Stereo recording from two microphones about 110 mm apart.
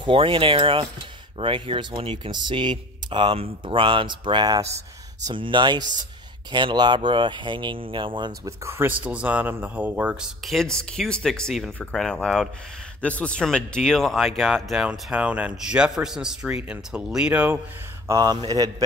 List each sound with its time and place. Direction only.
0.0 s speech: 55° right (ahead or behind)
2.3 s speech: 45° right (ahead or behind)
8.5 s speech: 25° right (ahead or behind)
10.2 s speech: centre (ahead or behind)
18.0 s speech: 35° right (ahead or behind)